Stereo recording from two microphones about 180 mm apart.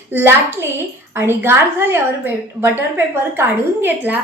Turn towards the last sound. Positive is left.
turn(degrees=-10)  # may be behind; listen again after turning